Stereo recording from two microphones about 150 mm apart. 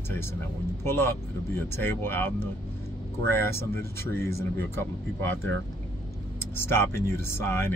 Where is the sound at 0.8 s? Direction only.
15° left (ahead or behind).